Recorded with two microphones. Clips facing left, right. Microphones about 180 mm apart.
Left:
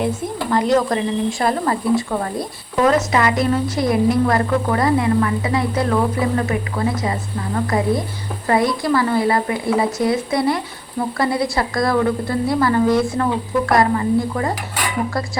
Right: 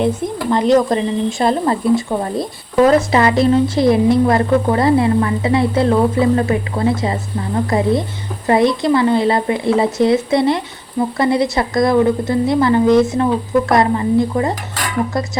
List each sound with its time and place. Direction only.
0.5 s speech: 20° right (ahead or behind)